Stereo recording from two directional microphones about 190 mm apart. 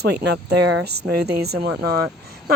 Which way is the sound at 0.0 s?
60° right (ahead or behind).